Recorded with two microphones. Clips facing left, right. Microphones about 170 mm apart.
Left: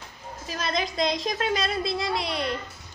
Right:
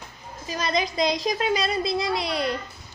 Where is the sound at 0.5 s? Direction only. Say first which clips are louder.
Right 3 dB; centre (ahead or behind).